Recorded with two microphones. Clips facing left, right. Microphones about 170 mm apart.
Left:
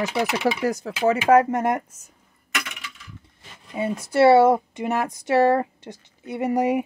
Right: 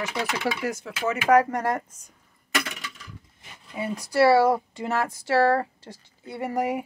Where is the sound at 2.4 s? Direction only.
35° right (ahead or behind).